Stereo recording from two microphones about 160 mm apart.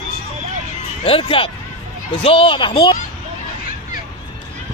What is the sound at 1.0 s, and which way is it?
Speech, 35° left (ahead or behind).